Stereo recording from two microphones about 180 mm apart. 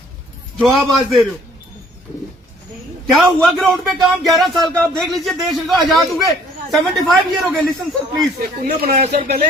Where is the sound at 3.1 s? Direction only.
Centre (ahead or behind).